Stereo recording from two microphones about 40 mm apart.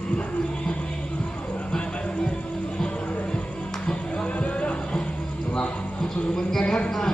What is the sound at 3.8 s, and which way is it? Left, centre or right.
Music, left.